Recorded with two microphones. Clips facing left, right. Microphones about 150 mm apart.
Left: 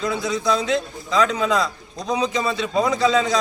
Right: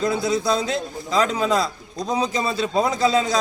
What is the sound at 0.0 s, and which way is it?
A man's voice, 35° right (ahead or behind).